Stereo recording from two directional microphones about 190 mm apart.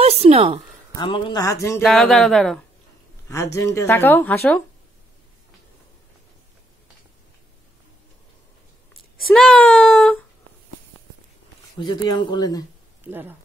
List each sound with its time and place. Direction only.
0.0 s a woman's voice: 30° right (ahead or behind)
0.9 s speech: 25° left (ahead or behind)
1.8 s speech: centre (ahead or behind)
3.5 s a woman's voice: 15° left (ahead or behind)
9.2 s a woman's voice: 5° left (ahead or behind)
11.8 s speech: 20° left (ahead or behind)
13.0 s speech: 10° right (ahead or behind)